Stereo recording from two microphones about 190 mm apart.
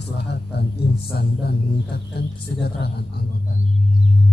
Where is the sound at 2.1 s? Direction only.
60° left (ahead or behind).